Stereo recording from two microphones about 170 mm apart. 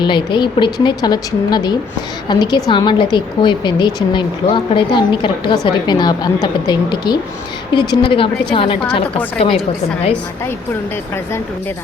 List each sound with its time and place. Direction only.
0.0 s a woman's voice: 25° left (ahead or behind)